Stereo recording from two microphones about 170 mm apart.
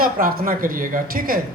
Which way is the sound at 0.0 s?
60° right (ahead or behind).